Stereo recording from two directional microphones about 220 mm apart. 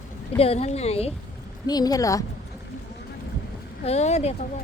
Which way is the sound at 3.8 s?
30° left (ahead or behind).